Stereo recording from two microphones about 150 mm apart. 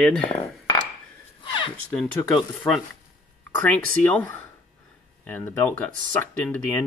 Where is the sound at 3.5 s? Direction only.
10° left (ahead or behind).